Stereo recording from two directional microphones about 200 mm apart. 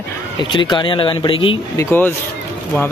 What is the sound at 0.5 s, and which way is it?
Speech, 25° left (ahead or behind).